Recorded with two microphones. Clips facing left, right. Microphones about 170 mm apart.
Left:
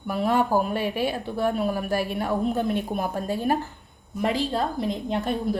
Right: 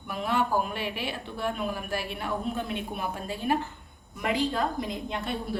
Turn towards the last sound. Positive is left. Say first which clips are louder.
# left 7 dB
turn(degrees=35)  # may be behind; listen again after turning